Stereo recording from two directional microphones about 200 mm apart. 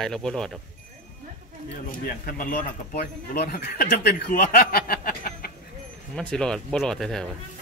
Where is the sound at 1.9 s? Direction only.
45° left (ahead or behind).